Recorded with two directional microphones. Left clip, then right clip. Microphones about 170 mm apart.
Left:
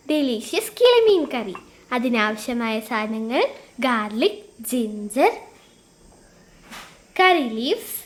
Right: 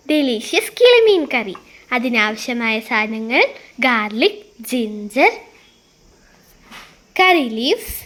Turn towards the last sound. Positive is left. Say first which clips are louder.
# right 4 dB
turn(degrees=-35)  # may be behind; listen again after turning